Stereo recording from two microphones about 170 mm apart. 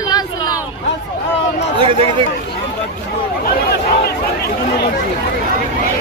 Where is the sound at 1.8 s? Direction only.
30° right (ahead or behind).